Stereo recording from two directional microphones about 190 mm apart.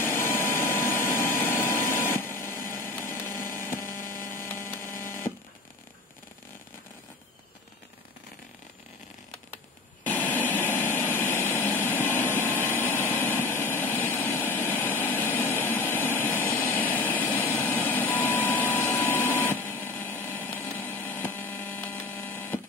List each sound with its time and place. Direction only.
0.0 s vacuum cleaner: 10° left (ahead or behind)
3.5 s mains hum: 10° left (ahead or behind)
3.8 s mains hum: 45° left (ahead or behind)
4.1 s mains hum: 15° left (ahead or behind)
5.0 s a sound: 15° left (ahead or behind)
10.0 s vehicle: 10° left (ahead or behind)